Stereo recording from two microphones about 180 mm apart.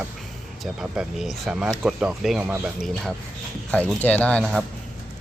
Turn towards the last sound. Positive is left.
turn(degrees=0)  # may be behind; listen again after turning